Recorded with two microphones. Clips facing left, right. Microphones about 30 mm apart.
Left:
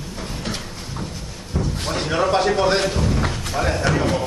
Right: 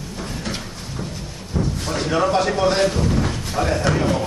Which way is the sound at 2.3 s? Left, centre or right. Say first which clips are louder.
Left 3 dB; left.